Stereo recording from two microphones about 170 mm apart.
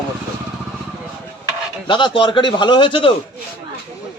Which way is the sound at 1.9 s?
30° left (ahead or behind).